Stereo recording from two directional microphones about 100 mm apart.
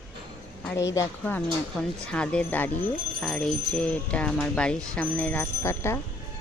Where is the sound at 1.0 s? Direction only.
30° left (ahead or behind).